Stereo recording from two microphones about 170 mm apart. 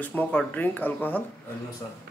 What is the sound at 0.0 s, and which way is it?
A man's voice, 10° left (ahead or behind).